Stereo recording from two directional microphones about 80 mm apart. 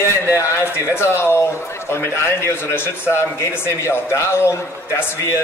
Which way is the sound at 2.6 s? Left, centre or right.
Left.